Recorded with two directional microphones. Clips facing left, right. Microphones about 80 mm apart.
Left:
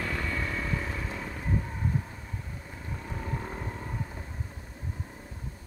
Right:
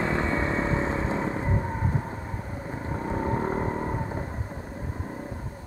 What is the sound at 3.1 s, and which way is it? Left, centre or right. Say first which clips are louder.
Vehicle: right 10 dB; right.